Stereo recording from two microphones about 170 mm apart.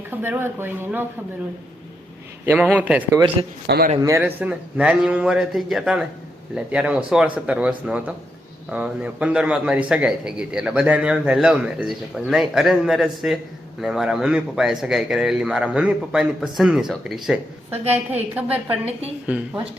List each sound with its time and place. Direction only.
0.1 s speech: 10° right (ahead or behind)
2.5 s speech: 10° right (ahead or behind)
3.4 s a man's voice: 35° right (ahead or behind)
3.7 s a man's voice: 65° right (ahead or behind)
4.0 s a man's voice: 15° right (ahead or behind)